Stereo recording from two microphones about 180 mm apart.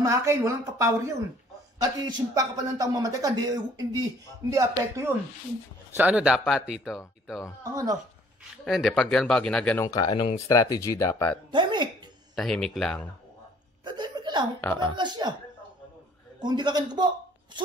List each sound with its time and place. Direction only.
0.0 s a woman's voice: 15° right (ahead or behind)
7.7 s a man's voice: 20° right (ahead or behind)
8.6 s speech: centre (ahead or behind)
9.8 s speech: 20° left (ahead or behind)
11.5 s speech: 25° right (ahead or behind)
12.4 s speech: 5° left (ahead or behind)
13.8 s chuckle: 25° right (ahead or behind)
14.6 s speech: 10° left (ahead or behind)
15.0 s a man's voice: 25° right (ahead or behind)
16.3 s a man's voice: 25° right (ahead or behind)